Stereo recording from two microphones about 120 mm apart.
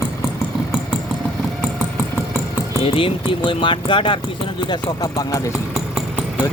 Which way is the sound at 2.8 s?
45° left (ahead or behind).